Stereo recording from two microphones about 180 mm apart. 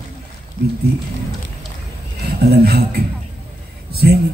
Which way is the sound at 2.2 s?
60° right (ahead or behind).